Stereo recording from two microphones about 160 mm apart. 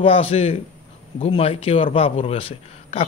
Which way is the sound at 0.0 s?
35° left (ahead or behind).